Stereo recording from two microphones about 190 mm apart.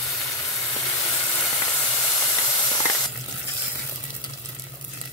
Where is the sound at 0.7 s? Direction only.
10° left (ahead or behind).